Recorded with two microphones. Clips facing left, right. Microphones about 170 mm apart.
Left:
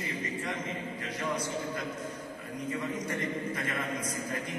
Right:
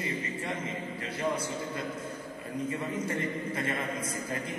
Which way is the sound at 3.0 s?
30° right (ahead or behind).